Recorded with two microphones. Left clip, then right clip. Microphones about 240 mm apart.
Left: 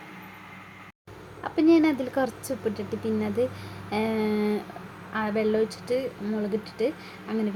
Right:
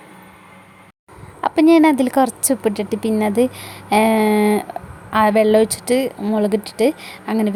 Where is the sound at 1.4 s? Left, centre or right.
Right.